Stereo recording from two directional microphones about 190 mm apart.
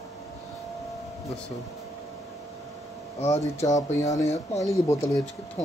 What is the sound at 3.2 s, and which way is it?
Speech, 35° left (ahead or behind).